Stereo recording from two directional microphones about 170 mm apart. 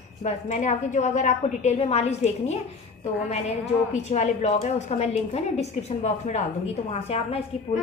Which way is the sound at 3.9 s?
45° left (ahead or behind).